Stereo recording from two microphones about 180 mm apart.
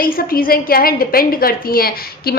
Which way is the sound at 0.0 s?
55° left (ahead or behind).